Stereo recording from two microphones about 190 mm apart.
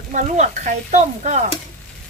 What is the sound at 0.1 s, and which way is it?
Speech, 40° right (ahead or behind).